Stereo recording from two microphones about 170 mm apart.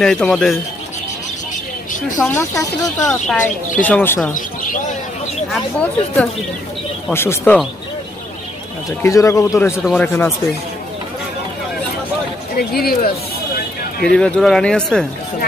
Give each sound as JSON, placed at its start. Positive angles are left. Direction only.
{"t": 0.0, "sound": "speech", "side_deg": 5}
{"t": 2.2, "sound": "speech", "side_deg": 15}
{"t": 3.1, "sound": "speech", "side_deg": 5}
{"t": 5.5, "sound": "speech", "side_deg": 10}
{"t": 9.0, "sound": "speech", "side_deg": 20}
{"t": 12.5, "sound": "speech", "side_deg": 65}
{"t": 14.1, "sound": "speech", "side_deg": 5}